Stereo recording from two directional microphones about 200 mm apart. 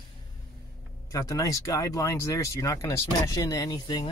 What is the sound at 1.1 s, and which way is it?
Speech, 15° left (ahead or behind).